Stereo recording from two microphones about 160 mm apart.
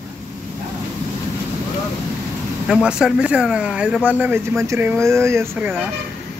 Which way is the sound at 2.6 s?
5° right (ahead or behind).